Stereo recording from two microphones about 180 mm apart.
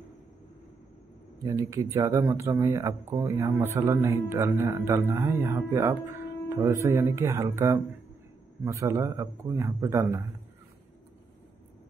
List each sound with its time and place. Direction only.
1.4 s speech: 20° right (ahead or behind)